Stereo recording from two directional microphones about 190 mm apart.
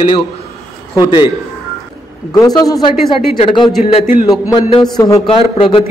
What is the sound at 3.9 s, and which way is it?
Speech, 35° left (ahead or behind).